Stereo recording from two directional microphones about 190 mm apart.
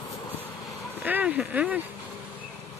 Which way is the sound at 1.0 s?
10° right (ahead or behind).